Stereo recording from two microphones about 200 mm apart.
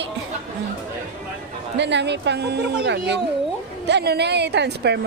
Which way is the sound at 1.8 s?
60° right (ahead or behind).